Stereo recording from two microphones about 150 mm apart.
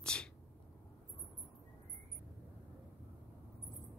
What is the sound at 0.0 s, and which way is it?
Sneeze, 5° left (ahead or behind).